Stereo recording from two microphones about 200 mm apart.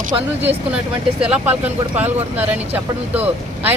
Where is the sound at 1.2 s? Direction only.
5° right (ahead or behind).